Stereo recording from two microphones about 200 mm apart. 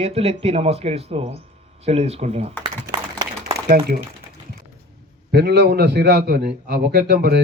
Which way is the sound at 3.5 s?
30° right (ahead or behind).